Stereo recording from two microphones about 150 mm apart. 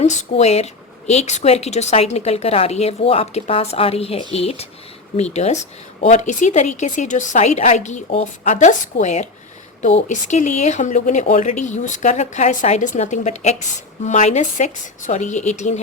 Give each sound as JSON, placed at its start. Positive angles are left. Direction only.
{"t": 0.0, "sound": "a woman's voice", "side_deg": 50}